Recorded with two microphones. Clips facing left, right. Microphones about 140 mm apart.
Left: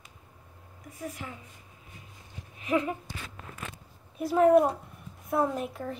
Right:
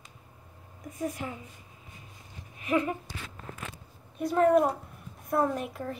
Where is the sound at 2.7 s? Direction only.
15° left (ahead or behind).